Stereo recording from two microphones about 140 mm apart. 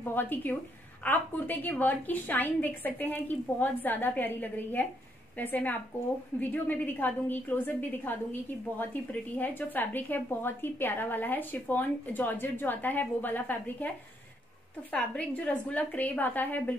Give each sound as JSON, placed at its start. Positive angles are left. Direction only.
{"t": 0.0, "sound": "a woman's voice", "side_deg": 15}
{"t": 14.9, "sound": "a woman's voice", "side_deg": 10}